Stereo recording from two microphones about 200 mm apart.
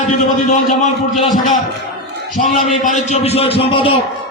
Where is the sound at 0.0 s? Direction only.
35° left (ahead or behind).